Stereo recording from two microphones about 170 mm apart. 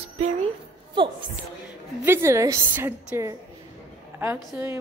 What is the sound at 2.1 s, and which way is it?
A woman's voice, 15° right (ahead or behind).